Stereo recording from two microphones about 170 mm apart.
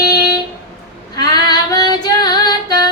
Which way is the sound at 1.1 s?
25° left (ahead or behind).